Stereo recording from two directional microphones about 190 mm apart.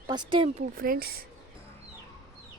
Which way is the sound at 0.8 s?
50° right (ahead or behind).